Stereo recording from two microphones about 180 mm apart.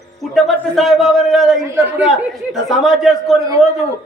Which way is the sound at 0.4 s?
Centre (ahead or behind).